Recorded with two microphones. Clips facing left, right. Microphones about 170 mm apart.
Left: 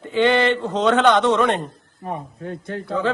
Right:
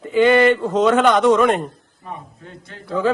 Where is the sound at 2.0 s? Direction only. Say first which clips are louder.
Left 6 dB; 50° left (ahead or behind).